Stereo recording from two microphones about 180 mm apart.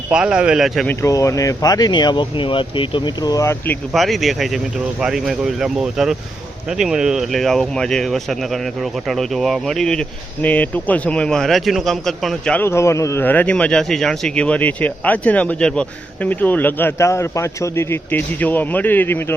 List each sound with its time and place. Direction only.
0.1 s speech: 5° right (ahead or behind)
0.9 s speech: 15° left (ahead or behind)
3.9 s speech: centre (ahead or behind)